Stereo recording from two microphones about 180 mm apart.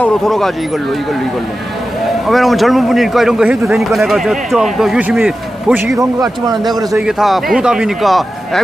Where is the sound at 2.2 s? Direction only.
Centre (ahead or behind); by 7.0 s 20° right (ahead or behind).